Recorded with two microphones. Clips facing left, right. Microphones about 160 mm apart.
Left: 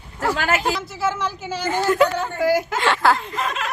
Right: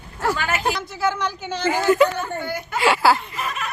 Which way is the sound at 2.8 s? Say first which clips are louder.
Right 1 dB; 10° right (ahead or behind).